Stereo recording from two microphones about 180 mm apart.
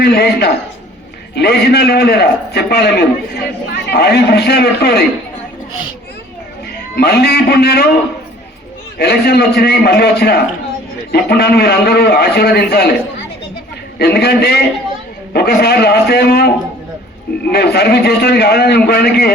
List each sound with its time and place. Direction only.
0.0 s a man's voice: 65° left (ahead or behind)
6.9 s a man's voice: 60° left (ahead or behind)
9.0 s a man's voice: 60° left (ahead or behind)
14.0 s a man's voice: 60° left (ahead or behind)
17.5 s a man's voice: 65° left (ahead or behind)